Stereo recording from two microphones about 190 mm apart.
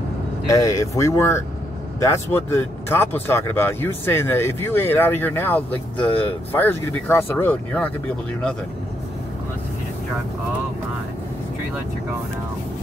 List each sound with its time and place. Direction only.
0.5 s speech: 15° left (ahead or behind)